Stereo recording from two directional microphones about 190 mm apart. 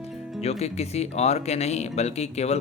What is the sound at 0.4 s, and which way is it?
Speech, 35° left (ahead or behind).